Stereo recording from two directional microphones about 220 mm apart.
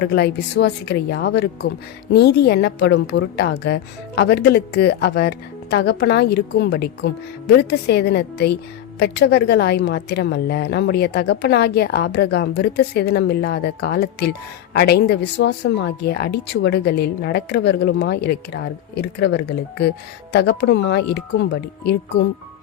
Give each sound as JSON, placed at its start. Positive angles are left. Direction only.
{"t": 0.0, "sound": "a woman's voice", "side_deg": 45}